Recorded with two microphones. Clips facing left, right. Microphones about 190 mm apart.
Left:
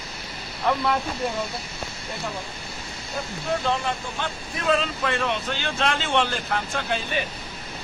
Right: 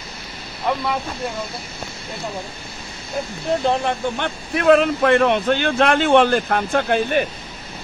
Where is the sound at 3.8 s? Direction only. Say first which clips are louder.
Right 7 dB; 65° right (ahead or behind).